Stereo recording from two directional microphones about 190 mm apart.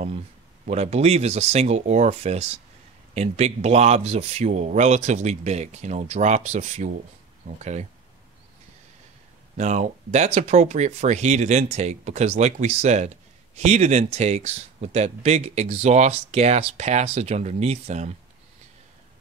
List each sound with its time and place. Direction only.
0.7 s speech: 35° right (ahead or behind)
9.6 s speech: 35° right (ahead or behind)